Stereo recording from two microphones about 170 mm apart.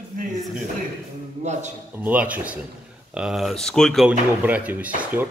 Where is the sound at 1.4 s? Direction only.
45° right (ahead or behind).